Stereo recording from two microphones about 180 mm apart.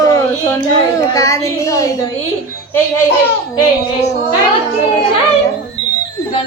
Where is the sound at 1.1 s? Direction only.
15° left (ahead or behind).